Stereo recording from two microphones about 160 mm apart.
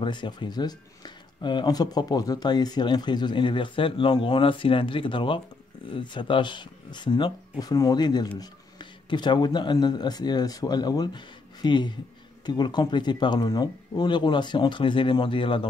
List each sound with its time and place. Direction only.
0.0 s speech: 30° left (ahead or behind)